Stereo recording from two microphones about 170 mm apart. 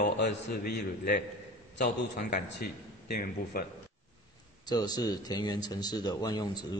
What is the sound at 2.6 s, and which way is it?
A man's voice, 65° left (ahead or behind).